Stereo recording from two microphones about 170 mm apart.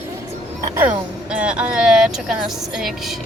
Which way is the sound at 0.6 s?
15° right (ahead or behind).